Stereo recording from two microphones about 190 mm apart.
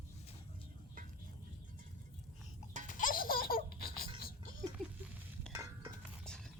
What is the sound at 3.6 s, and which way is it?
Laughter, 50° left (ahead or behind).